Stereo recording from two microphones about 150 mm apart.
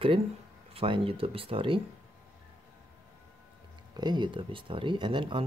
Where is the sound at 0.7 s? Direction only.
35° right (ahead or behind).